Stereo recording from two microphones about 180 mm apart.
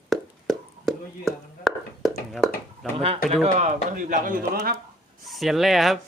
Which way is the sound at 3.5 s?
45° right (ahead or behind).